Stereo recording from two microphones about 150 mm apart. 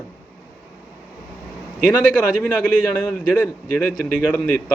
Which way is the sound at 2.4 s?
10° left (ahead or behind).